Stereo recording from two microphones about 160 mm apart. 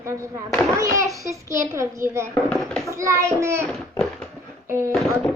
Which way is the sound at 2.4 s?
5° left (ahead or behind).